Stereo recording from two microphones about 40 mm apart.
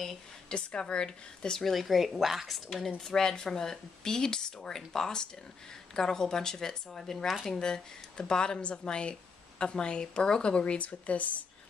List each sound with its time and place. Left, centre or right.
0.5 s a woman's voice: left
1.6 s speech: centre
3.0 s speech: centre
7.5 s a woman's voice: centre; by 11.2 s left